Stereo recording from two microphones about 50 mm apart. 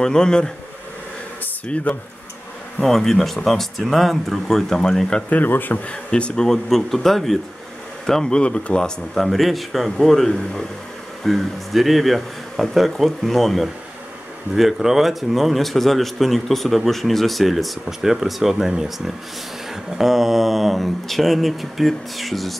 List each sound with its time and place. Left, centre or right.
0.0 s speech: centre
1.7 s speech: left
2.8 s a man's voice: centre
5.3 s speech: left
5.9 s speech: left
6.4 s a man's voice: centre
8.3 s speech: centre
9.1 s a man's voice: centre
11.2 s a man's voice: centre